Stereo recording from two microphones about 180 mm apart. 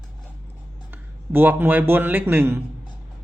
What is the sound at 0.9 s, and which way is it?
A man's voice, 10° right (ahead or behind).